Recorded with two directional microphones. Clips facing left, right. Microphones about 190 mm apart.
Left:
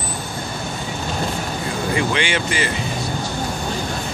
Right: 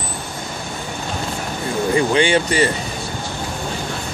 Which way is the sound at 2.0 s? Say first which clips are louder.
Right 7 dB; 35° right (ahead or behind).